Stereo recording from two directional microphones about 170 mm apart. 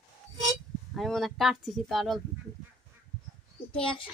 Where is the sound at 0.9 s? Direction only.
Centre (ahead or behind).